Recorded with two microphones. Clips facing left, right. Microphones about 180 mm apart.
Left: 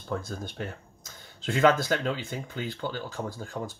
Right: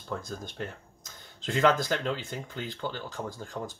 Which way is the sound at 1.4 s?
5° left (ahead or behind).